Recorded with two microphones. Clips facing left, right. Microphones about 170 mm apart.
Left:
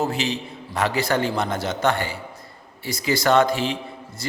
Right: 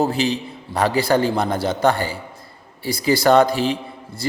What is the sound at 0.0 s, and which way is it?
A man's voice, 35° right (ahead or behind).